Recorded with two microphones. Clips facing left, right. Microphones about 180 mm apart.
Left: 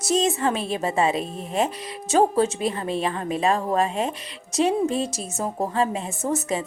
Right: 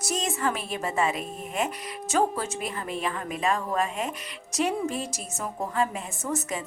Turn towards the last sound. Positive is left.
turn(degrees=30)  # may be behind; listen again after turning